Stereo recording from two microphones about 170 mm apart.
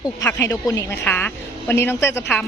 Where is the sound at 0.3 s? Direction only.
10° left (ahead or behind).